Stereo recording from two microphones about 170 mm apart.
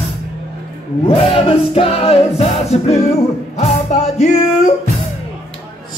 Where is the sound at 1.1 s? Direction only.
35° left (ahead or behind).